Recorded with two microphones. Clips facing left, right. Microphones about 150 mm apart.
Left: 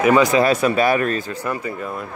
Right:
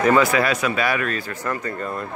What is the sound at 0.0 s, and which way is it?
Speech, 15° left (ahead or behind).